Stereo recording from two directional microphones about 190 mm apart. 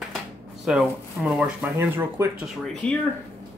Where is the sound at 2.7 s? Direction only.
5° left (ahead or behind).